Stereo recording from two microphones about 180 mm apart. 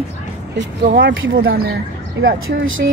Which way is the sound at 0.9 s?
90° right.